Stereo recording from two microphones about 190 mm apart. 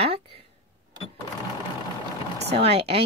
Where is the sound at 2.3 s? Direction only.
60° right (ahead or behind).